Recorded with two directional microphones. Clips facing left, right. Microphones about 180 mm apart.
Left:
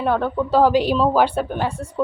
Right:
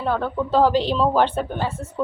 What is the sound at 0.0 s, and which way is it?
A woman's voice, 15° left (ahead or behind).